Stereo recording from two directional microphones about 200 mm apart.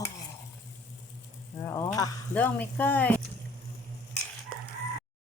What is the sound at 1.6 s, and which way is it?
Stir, 15° left (ahead or behind).